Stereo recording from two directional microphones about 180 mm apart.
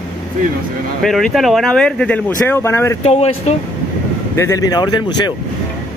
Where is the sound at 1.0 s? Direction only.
Centre (ahead or behind).